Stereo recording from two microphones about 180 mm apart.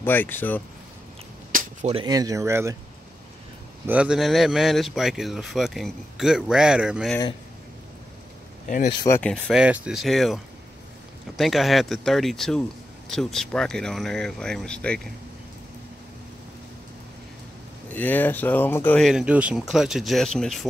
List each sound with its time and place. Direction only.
0.0 s speech: 10° left (ahead or behind)
1.5 s cap gun: 50° right (ahead or behind)
1.9 s speech: 25° right (ahead or behind)
3.8 s speech: 5° right (ahead or behind)
8.6 s speech: 45° left (ahead or behind)
9.0 s speech: 10° left (ahead or behind)
9.6 s speech: 5° right (ahead or behind)
17.9 s speech: 10° left (ahead or behind)
18.9 s speech: centre (ahead or behind)